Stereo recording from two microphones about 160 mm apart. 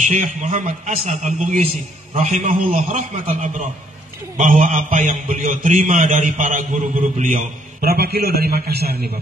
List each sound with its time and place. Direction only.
0.0 s a man's voice: 50° right (ahead or behind)
7.8 s a man's voice: 75° right (ahead or behind)